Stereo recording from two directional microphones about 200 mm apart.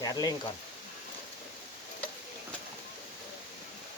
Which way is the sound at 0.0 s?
20° left (ahead or behind).